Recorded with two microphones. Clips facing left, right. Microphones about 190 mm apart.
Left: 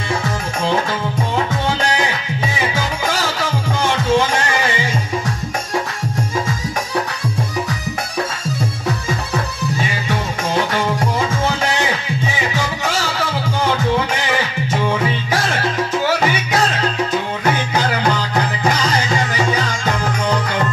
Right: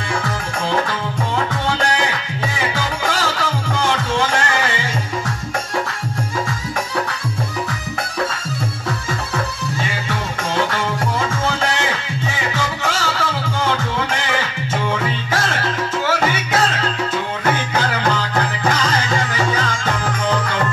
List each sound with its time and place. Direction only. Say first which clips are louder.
2.7 s music: left 1 dB; 15° left (ahead or behind)
9.8 s music: left 2 dB; 15° left (ahead or behind)
12.5 s music: left 1 dB; 15° left (ahead or behind)
18.3 s music: left 1 dB; 15° left (ahead or behind)